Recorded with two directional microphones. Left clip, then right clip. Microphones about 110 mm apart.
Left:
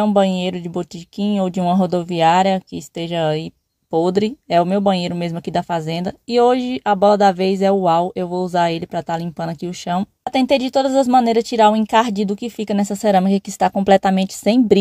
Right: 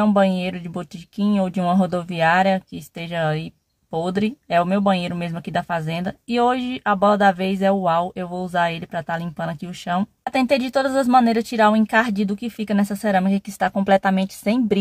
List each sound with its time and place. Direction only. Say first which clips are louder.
0.0 s speech: left 2 dB; 35° left (ahead or behind)
13.0 s a woman's voice: left 7 dB; 55° left (ahead or behind)